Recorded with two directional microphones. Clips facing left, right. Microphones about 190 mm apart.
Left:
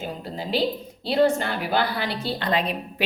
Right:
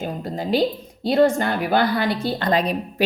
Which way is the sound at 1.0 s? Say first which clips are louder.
Right 3 dB; 45° right (ahead or behind).